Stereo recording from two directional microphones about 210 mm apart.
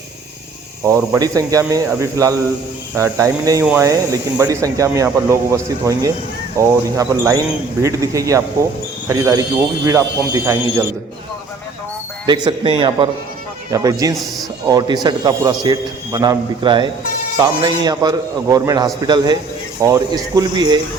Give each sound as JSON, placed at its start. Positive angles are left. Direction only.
{"t": 0.9, "sound": "speech", "side_deg": -15}
{"t": 12.2, "sound": "a man's voice", "side_deg": -20}